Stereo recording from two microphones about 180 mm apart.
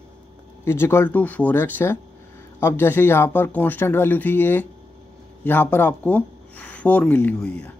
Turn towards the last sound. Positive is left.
turn(degrees=5)  # may be behind; listen again after turning